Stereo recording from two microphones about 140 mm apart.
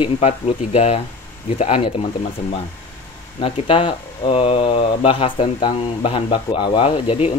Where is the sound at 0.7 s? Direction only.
50° left (ahead or behind).